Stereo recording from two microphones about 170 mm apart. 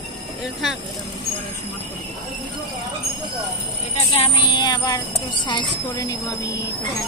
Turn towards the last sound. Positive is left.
turn(degrees=25)  # may be behind; listen again after turning